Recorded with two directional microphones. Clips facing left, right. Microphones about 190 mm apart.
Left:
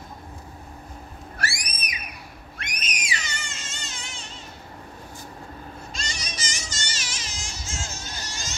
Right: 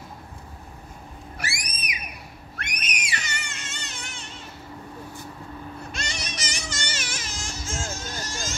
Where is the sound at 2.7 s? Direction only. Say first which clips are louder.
Left 1 dB; 65° right (ahead or behind).